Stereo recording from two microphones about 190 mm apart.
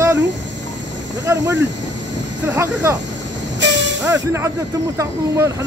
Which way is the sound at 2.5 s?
10° right (ahead or behind).